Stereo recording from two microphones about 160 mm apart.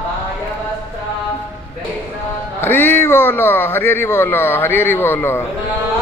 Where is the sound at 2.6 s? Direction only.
10° left (ahead or behind).